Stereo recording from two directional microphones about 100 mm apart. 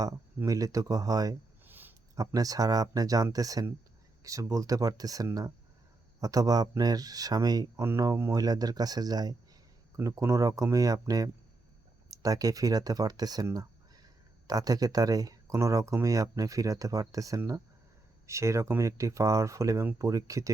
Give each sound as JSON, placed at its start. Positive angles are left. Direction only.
{"t": 0.4, "sound": "speech", "side_deg": -35}
{"t": 1.6, "sound": "a sound", "side_deg": -20}
{"t": 2.1, "sound": "speech", "side_deg": -35}